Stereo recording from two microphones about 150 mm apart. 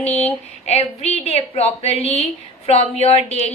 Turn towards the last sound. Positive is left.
turn(degrees=45)  # may be behind; listen again after turning